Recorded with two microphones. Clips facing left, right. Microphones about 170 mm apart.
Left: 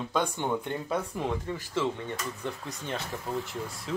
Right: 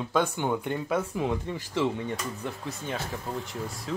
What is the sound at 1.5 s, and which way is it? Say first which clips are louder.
Speech: right 2 dB; 20° right (ahead or behind).